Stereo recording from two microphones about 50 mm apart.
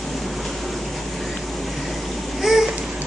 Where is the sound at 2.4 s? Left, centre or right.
Centre.